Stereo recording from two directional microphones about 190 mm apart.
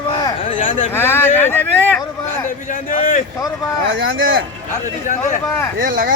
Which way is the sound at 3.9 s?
90° right.